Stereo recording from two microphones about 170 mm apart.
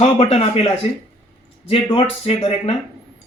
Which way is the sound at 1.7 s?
30° left (ahead or behind).